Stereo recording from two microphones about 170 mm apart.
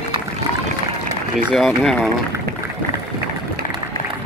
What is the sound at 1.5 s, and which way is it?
Speech, centre (ahead or behind).